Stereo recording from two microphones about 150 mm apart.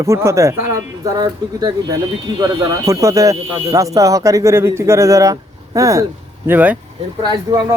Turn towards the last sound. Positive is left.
turn(degrees=-30)  # may be behind; listen again after turning